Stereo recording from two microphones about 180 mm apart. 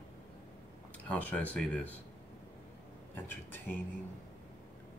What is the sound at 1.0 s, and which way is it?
Speech, 5° left (ahead or behind).